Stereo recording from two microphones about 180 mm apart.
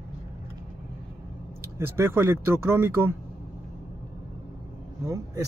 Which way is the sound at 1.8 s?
15° right (ahead or behind).